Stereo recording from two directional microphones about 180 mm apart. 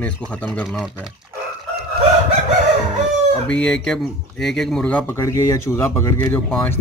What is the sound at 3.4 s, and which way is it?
Speech, 5° left (ahead or behind).